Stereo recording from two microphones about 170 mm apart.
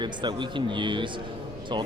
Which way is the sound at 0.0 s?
25° right (ahead or behind).